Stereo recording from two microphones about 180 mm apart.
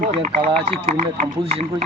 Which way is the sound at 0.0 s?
45° right (ahead or behind).